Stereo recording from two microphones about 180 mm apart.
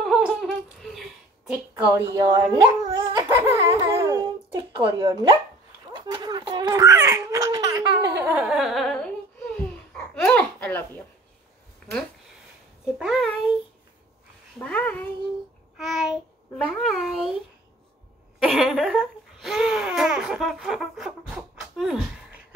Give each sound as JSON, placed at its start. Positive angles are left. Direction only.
{"t": 0.0, "sound": "a sound", "side_deg": 0}
{"t": 2.0, "sound": "speech", "side_deg": -20}
{"t": 2.5, "sound": "laughter", "side_deg": -25}
{"t": 4.9, "sound": "speech", "side_deg": -25}
{"t": 10.1, "sound": "babbling", "side_deg": 5}
{"t": 12.8, "sound": "a child's voice", "side_deg": 0}
{"t": 14.6, "sound": "a child's voice", "side_deg": 10}
{"t": 15.8, "sound": "a child's voice", "side_deg": 0}
{"t": 18.4, "sound": "babbling", "side_deg": 0}